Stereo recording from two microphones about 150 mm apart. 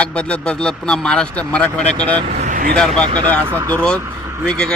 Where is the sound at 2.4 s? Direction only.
60° right (ahead or behind).